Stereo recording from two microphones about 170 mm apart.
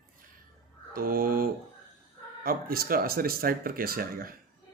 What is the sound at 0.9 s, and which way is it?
Speech, 60° right (ahead or behind).